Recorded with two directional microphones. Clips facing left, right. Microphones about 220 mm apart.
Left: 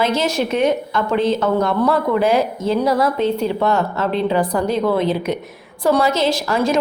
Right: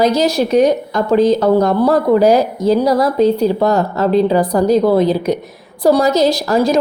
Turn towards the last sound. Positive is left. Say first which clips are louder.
# right 4 dB
turn(degrees=-40)  # may be behind; listen again after turning